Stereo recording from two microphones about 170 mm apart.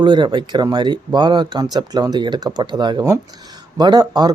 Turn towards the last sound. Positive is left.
turn(degrees=-25)  # may be behind; listen again after turning